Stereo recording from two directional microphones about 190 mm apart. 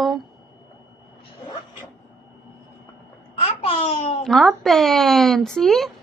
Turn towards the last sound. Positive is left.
turn(degrees=0)  # may be behind; listen again after turning